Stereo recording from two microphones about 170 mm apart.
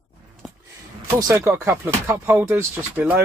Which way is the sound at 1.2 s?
20° right (ahead or behind).